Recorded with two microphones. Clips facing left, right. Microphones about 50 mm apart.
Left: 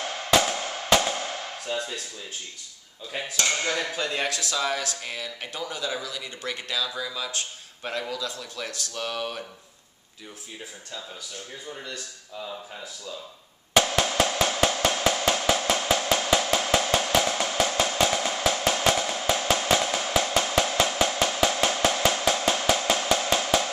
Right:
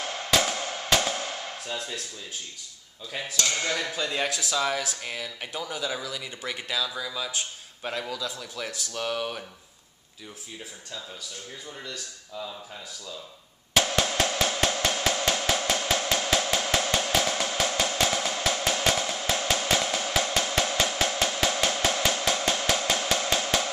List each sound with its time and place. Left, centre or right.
0.3 s music: centre
1.7 s speech: centre
3.1 s speech: centre
4.3 s speech: centre
5.0 s speech: centre
12.4 s speech: centre
13.7 s drum: centre
15.3 s music: centre
15.6 s drum: centre
17.5 s drum: centre
17.7 s drum: centre
19.2 s percussion: centre
19.7 s music: centre
23.0 s percussion: centre